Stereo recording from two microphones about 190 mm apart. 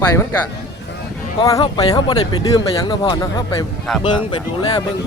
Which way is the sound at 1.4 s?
20° left (ahead or behind).